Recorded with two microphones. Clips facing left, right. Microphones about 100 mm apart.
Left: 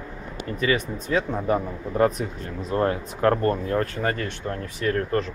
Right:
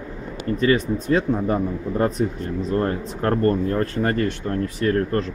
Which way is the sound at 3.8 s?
35° right (ahead or behind).